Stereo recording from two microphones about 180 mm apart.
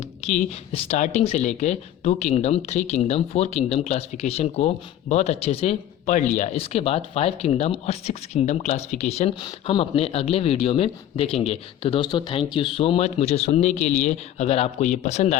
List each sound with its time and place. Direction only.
0.3 s a woman's voice: 40° left (ahead or behind)